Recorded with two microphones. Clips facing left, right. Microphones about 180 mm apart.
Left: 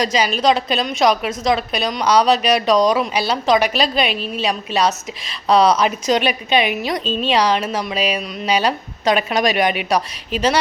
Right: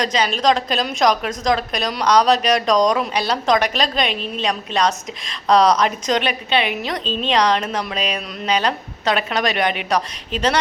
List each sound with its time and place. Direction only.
0.0 s a woman's voice: 10° left (ahead or behind)